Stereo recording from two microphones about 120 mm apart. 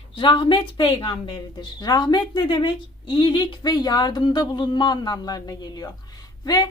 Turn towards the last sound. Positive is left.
turn(degrees=35)  # may be behind; listen again after turning